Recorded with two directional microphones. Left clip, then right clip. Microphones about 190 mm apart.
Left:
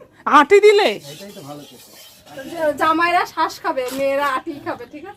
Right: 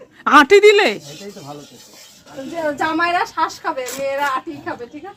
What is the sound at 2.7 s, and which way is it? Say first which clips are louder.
A woman's voice: left 2 dB; 15° left (ahead or behind).